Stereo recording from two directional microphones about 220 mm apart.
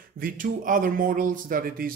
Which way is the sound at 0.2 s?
40° right (ahead or behind).